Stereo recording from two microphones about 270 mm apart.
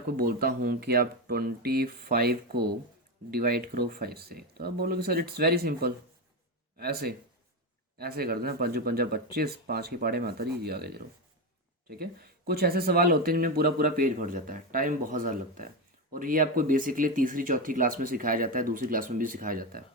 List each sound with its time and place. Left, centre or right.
0.2 s speech: right